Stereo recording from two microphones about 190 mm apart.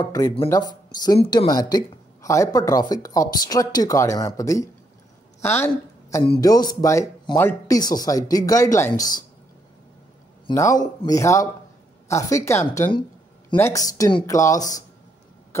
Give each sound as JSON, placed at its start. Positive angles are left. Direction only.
{"t": 0.0, "sound": "a woman's voice", "side_deg": 20}
{"t": 6.2, "sound": "speech", "side_deg": 25}
{"t": 10.5, "sound": "speech", "side_deg": 15}